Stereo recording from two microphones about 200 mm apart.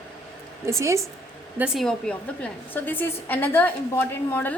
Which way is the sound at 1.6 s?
Centre (ahead or behind).